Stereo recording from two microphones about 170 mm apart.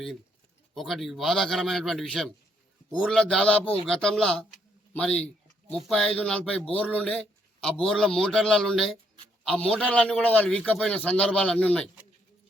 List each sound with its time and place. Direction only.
0.7 s a man's voice: centre (ahead or behind)